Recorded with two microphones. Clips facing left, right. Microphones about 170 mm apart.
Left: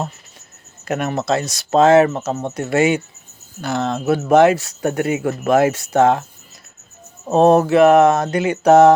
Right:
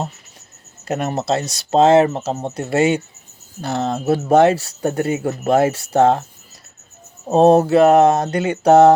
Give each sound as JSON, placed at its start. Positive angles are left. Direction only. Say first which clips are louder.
{"t": 0.9, "sound": "speech", "louder": "even", "side_deg": -35}
{"t": 7.3, "sound": "speech", "louder": "right 1 dB", "side_deg": -35}